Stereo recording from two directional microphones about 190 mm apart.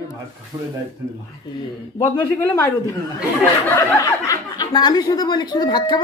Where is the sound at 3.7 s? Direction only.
15° left (ahead or behind).